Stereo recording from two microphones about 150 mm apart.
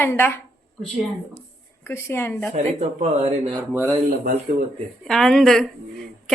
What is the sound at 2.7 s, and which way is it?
Speech, 50° right (ahead or behind).